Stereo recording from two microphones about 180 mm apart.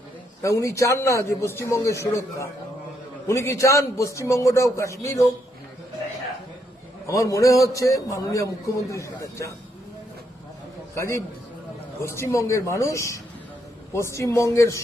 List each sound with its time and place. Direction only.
0.4 s a man's voice: 15° left (ahead or behind)
7.1 s a man's voice: 15° left (ahead or behind)
10.9 s a man's voice: 15° left (ahead or behind)